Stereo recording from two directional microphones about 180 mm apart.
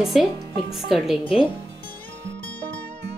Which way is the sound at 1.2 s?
30° left (ahead or behind).